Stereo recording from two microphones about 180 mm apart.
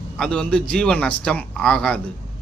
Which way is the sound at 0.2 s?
5° left (ahead or behind).